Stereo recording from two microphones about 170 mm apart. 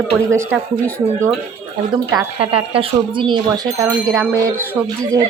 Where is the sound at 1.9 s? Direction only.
30° right (ahead or behind).